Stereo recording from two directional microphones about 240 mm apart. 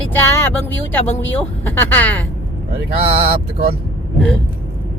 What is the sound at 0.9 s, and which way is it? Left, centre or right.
A woman's voice, centre.